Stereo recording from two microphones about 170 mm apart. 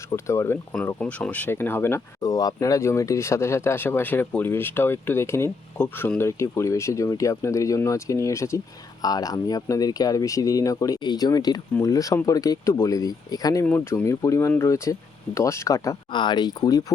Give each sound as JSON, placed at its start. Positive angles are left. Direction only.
{"t": 0.1, "sound": "speech", "side_deg": 15}